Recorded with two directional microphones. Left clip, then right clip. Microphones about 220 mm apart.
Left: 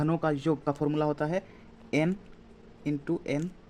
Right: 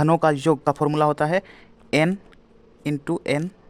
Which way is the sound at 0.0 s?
45° right (ahead or behind).